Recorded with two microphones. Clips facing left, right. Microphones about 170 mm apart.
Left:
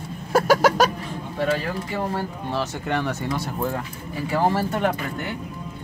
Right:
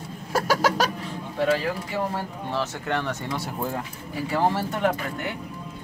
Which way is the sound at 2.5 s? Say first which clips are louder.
Left 1 dB; 15° left (ahead or behind).